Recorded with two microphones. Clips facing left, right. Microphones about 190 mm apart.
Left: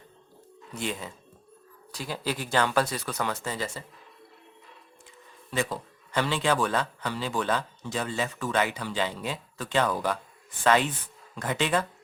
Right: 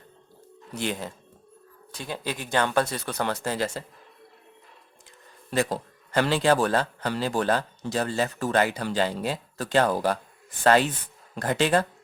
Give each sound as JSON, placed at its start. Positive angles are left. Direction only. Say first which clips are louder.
{"t": 1.9, "sound": "speech", "louder": "even", "side_deg": -25}
{"t": 3.4, "sound": "speech", "louder": "right 5 dB", "side_deg": -80}
{"t": 5.5, "sound": "a man's voice", "louder": "right 4 dB", "side_deg": -40}